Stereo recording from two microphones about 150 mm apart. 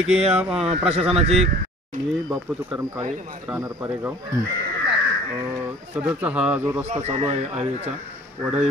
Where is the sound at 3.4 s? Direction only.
10° right (ahead or behind).